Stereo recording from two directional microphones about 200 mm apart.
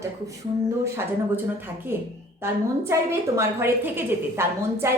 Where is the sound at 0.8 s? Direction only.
15° right (ahead or behind).